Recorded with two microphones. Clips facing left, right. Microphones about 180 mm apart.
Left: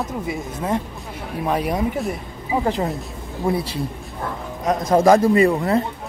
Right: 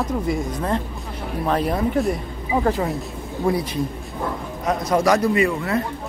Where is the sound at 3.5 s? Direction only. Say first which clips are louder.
Even; 25° left (ahead or behind).